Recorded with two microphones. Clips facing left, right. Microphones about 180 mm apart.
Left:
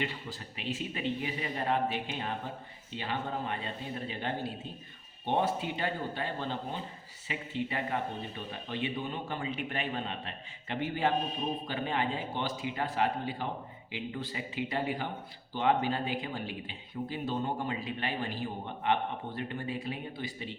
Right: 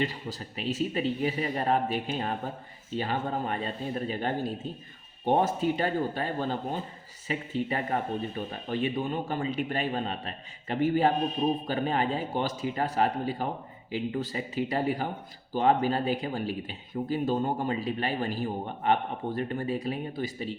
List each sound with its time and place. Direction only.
0.0 s speech: 40° right (ahead or behind)